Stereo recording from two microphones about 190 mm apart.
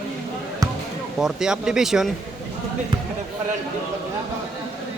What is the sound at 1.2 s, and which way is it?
Speech, 5° right (ahead or behind).